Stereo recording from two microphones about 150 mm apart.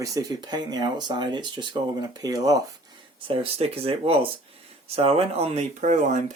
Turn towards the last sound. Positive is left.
turn(degrees=-55)  # may be behind; listen again after turning